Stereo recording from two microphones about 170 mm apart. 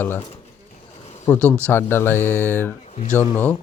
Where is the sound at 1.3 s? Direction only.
10° left (ahead or behind).